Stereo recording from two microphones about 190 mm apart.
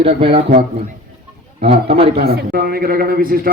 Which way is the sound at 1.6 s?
30° right (ahead or behind).